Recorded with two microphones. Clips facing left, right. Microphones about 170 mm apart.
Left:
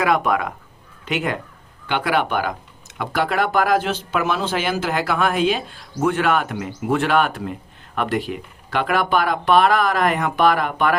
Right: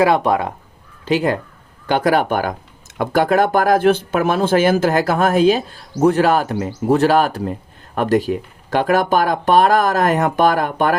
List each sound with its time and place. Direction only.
0.0 s speech: 30° right (ahead or behind)